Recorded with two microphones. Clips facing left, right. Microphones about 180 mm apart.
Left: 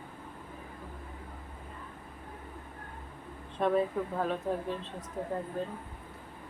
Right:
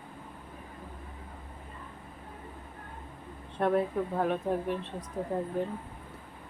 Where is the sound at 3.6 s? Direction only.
10° right (ahead or behind).